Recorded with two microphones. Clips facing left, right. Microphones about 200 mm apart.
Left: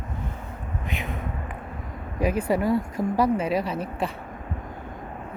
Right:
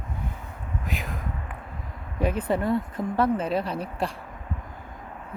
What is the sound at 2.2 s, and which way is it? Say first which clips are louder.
Speech: left 2 dB; 10° left (ahead or behind).